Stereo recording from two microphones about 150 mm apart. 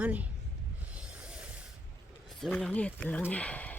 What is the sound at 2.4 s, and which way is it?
Speech, 5° left (ahead or behind).